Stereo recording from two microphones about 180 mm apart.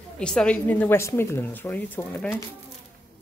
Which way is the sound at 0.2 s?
5° left (ahead or behind).